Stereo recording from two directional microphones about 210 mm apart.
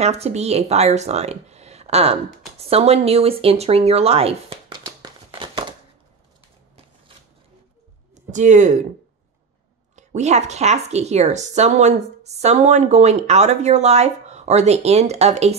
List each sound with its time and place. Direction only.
0.0 s speech: 30° right (ahead or behind)
8.1 s a sound: 35° right (ahead or behind)
9.9 s speech: 35° right (ahead or behind)